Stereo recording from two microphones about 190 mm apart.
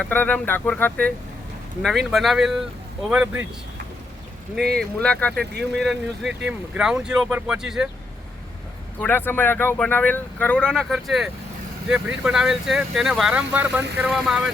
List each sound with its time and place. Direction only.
0.0 s speech: 10° left (ahead or behind)
4.8 s speech: 5° left (ahead or behind)
5.4 s speech: 60° right (ahead or behind)
5.8 s speech: centre (ahead or behind)
9.0 s speech: 10° left (ahead or behind)